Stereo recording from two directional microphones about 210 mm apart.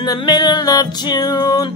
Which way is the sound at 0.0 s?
20° left (ahead or behind).